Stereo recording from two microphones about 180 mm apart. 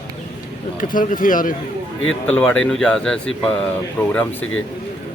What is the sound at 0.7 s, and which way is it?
Speech, 50° left (ahead or behind).